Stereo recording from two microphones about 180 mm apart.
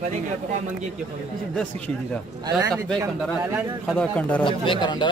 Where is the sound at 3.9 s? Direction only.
5° left (ahead or behind).